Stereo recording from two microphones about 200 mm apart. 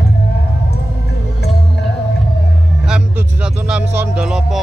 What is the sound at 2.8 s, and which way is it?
Speech, 5° right (ahead or behind).